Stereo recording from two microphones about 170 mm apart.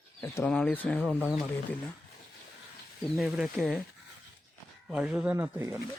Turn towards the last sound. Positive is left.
turn(degrees=-15)  # may be behind; listen again after turning